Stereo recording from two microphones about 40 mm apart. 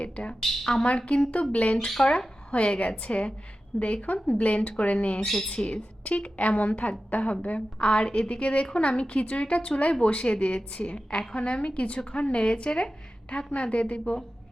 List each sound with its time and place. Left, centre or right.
0.0 s a woman's voice: left
0.6 s a woman's voice: centre
0.9 s a woman's voice: left
5.2 s speech: centre
5.5 s a woman's voice: left
11.3 s a woman's voice: left